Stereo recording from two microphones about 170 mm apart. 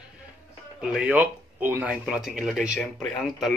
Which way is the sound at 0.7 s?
5° right (ahead or behind).